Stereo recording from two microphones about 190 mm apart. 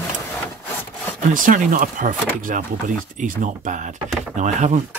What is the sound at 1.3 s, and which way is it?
Speech, 45° right (ahead or behind).